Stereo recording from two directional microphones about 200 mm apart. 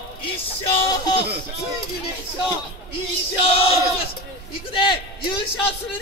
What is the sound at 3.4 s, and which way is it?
A man's voice, 30° left (ahead or behind).